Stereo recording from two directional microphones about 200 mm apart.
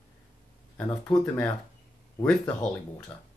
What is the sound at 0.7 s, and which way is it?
Speech, 5° left (ahead or behind).